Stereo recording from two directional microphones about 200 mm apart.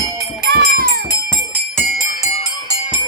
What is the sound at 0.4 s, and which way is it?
Music, 50° right (ahead or behind).